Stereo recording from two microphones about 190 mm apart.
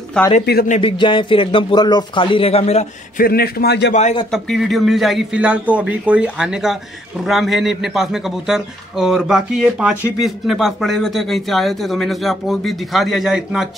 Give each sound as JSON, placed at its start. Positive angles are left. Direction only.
{"t": 0.2, "sound": "a man's voice", "side_deg": 5}
{"t": 0.7, "sound": "speech", "side_deg": 30}
{"t": 3.2, "sound": "a man's voice", "side_deg": 55}
{"t": 4.3, "sound": "a man's voice", "side_deg": 0}